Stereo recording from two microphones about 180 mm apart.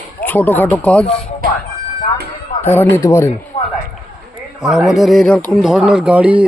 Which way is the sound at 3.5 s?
30° left (ahead or behind).